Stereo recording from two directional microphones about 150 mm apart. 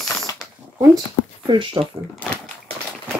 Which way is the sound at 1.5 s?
35° right (ahead or behind).